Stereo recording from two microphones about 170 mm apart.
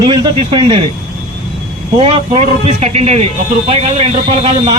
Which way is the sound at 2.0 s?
30° right (ahead or behind).